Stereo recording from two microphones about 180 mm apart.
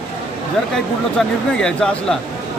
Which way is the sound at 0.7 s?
5° left (ahead or behind).